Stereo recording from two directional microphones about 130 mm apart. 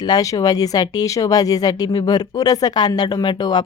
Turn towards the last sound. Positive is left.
turn(degrees=35)  # may be behind; listen again after turning